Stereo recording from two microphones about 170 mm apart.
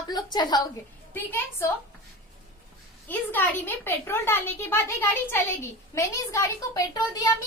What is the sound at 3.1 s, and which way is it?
A woman's voice, 10° left (ahead or behind).